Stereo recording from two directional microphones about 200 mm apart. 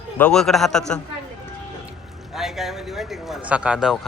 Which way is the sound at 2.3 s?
Centre (ahead or behind).